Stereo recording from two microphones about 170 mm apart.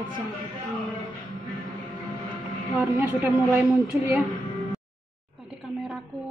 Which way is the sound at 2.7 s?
10° right (ahead or behind).